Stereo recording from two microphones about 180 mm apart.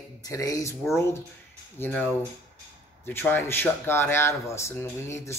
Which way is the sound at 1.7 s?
10° left (ahead or behind).